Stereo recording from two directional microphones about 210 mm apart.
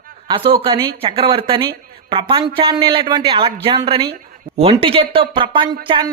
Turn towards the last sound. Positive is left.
turn(degrees=-25)  # may be behind; listen again after turning